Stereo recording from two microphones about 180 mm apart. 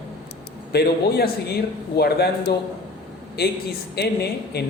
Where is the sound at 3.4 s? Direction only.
60° left (ahead or behind).